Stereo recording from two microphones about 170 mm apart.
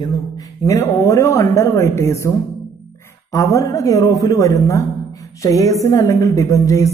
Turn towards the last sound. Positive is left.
turn(degrees=20)  # may be behind; listen again after turning